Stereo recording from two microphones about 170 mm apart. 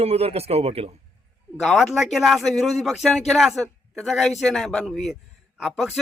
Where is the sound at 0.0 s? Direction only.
35° right (ahead or behind).